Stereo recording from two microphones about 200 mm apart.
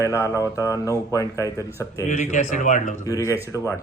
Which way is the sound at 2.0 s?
35° left (ahead or behind).